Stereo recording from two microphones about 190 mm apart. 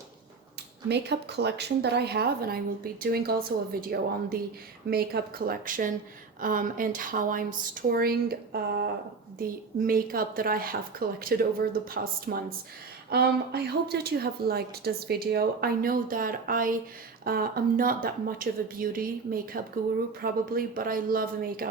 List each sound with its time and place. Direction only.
0.9 s a woman's voice: 60° right (ahead or behind)